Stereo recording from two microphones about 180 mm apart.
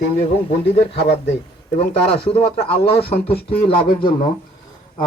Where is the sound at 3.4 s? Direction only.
60° left (ahead or behind).